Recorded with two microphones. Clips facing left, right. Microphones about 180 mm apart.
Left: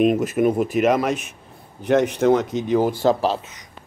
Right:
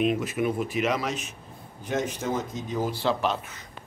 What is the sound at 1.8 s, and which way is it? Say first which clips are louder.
Speech: left 11 dB; 65° left (ahead or behind).